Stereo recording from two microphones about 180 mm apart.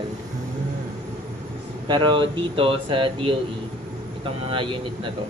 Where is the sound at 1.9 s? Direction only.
25° right (ahead or behind).